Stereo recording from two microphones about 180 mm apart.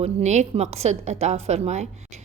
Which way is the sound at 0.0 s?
40° right (ahead or behind).